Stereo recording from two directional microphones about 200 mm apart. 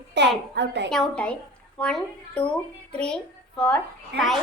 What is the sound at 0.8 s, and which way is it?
A child's voice, 5° left (ahead or behind).